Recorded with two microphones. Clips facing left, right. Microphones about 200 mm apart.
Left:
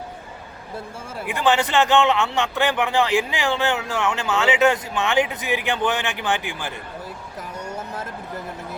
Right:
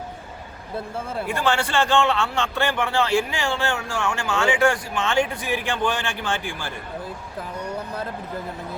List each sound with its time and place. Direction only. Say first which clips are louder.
1.3 s speech: left 4 dB; 20° left (ahead or behind)